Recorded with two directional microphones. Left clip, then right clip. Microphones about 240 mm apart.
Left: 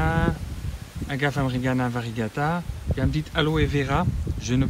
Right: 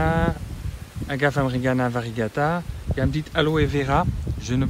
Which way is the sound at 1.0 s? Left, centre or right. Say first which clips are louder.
Right 4 dB; centre.